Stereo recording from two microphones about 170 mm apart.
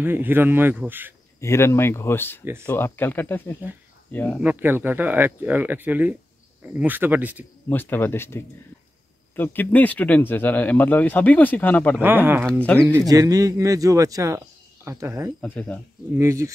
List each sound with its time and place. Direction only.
0.0 s speech: 10° right (ahead or behind)
1.4 s speech: 15° left (ahead or behind)
4.4 s speech: 10° right (ahead or behind)
7.7 s speech: 10° left (ahead or behind)
13.1 s speech: 20° right (ahead or behind)
15.4 s speech: 10° left (ahead or behind)
16.2 s speech: 15° right (ahead or behind)